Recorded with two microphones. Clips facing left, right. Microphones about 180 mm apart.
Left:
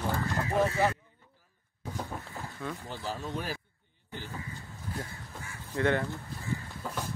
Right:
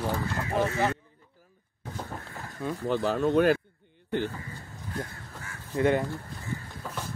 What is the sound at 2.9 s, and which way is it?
Speech, 70° right (ahead or behind).